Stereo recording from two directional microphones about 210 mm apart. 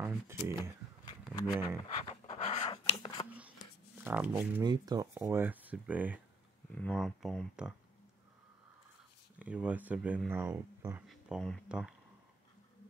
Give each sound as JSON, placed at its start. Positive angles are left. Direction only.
{"t": 0.0, "sound": "speech", "side_deg": -10}
{"t": 1.0, "sound": "a sound", "side_deg": 20}
{"t": 2.2, "sound": "writing", "side_deg": 35}
{"t": 2.6, "sound": "scissors", "side_deg": 20}
{"t": 3.3, "sound": "a sound", "side_deg": -5}
{"t": 4.3, "sound": "speech", "side_deg": -10}
{"t": 9.4, "sound": "speech", "side_deg": -5}